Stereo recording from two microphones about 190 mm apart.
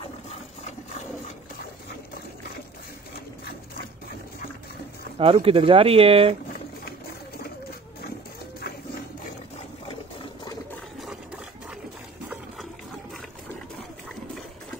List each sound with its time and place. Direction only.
5.2 s speech: 30° right (ahead or behind)